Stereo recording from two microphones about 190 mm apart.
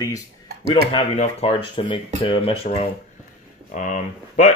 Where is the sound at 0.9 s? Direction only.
30° left (ahead or behind).